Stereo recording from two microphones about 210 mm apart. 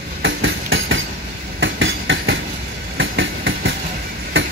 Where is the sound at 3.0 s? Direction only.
65° right (ahead or behind).